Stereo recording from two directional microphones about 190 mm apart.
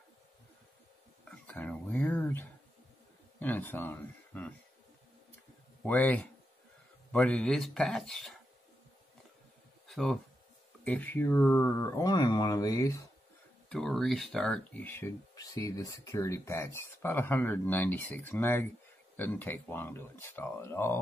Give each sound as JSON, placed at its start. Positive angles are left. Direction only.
{"t": 1.3, "sound": "speech", "side_deg": 10}
{"t": 5.8, "sound": "speech", "side_deg": 10}
{"t": 9.8, "sound": "a sound", "side_deg": 0}
{"t": 10.8, "sound": "speech", "side_deg": 10}
{"t": 13.7, "sound": "speech", "side_deg": 0}